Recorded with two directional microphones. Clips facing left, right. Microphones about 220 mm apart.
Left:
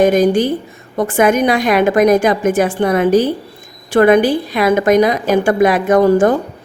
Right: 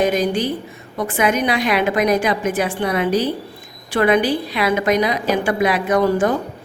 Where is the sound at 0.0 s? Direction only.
50° left (ahead or behind).